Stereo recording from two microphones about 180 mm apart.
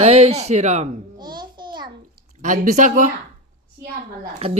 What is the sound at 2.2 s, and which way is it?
Speech, 45° right (ahead or behind).